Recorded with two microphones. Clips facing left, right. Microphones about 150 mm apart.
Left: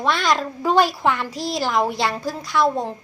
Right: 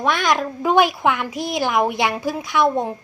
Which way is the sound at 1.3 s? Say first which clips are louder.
Right 1 dB; 55° right (ahead or behind).